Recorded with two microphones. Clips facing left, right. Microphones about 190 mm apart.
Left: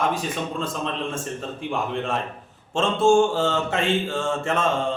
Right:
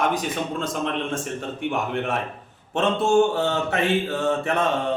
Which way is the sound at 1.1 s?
80° right.